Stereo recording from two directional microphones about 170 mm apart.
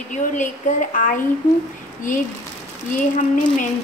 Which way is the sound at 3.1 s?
50° left (ahead or behind).